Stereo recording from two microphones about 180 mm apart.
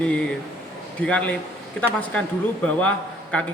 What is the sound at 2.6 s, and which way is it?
Speech, 5° left (ahead or behind).